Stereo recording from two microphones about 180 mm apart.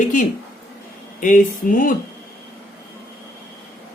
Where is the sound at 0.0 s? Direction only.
45° left (ahead or behind).